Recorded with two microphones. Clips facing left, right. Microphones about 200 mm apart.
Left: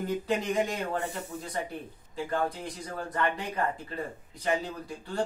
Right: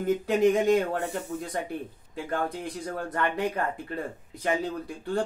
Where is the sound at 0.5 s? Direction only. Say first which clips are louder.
Right 7 dB; 55° right (ahead or behind).